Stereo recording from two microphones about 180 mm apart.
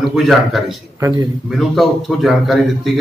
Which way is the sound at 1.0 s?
15° right (ahead or behind).